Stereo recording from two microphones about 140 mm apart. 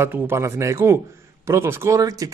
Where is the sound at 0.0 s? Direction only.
15° right (ahead or behind).